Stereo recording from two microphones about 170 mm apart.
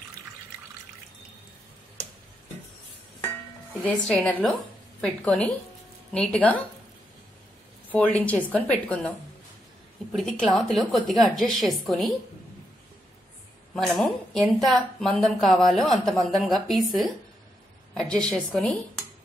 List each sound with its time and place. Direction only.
3.8 s a woman's voice: 10° left (ahead or behind)
7.9 s a woman's voice: 10° left (ahead or behind)
10.1 s a woman's voice: centre (ahead or behind)
13.7 s a woman's voice: 5° left (ahead or behind)